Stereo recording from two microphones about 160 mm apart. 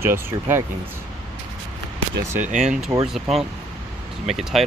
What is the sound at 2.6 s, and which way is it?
Speech, 5° right (ahead or behind).